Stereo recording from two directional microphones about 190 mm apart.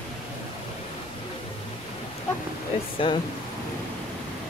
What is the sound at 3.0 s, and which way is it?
Pink noise, 25° left (ahead or behind).